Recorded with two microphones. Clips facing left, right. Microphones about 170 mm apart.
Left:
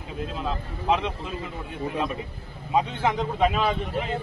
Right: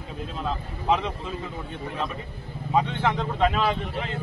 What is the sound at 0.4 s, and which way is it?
Speech, centre (ahead or behind).